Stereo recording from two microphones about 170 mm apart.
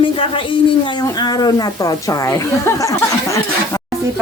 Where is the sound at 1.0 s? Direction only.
25° left (ahead or behind).